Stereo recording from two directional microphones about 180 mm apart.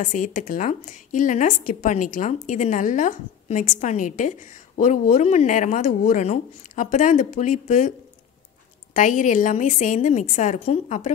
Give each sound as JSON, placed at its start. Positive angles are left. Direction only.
{"t": 0.0, "sound": "a woman's voice", "side_deg": 45}
{"t": 8.9, "sound": "a woman's voice", "side_deg": 45}